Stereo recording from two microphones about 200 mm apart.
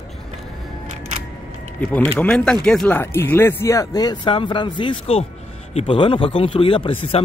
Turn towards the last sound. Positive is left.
turn(degrees=25)  # may be behind; listen again after turning